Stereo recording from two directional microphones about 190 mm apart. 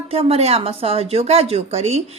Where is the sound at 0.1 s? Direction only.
30° right (ahead or behind).